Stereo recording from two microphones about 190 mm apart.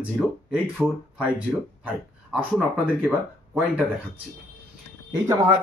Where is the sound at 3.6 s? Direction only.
5° right (ahead or behind).